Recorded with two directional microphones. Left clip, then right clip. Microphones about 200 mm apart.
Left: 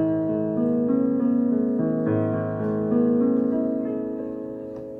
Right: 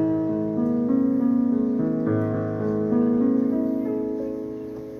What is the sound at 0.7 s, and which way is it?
Music, 20° left (ahead or behind).